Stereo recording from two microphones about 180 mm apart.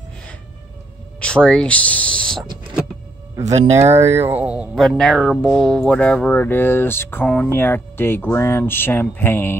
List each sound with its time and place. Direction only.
1.2 s speech: 5° left (ahead or behind)
3.5 s speech: 35° right (ahead or behind)
3.9 s speech: 15° right (ahead or behind); by 9.6 s 10° left (ahead or behind)